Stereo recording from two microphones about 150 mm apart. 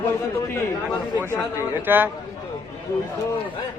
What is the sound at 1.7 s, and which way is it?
Speech, 15° right (ahead or behind).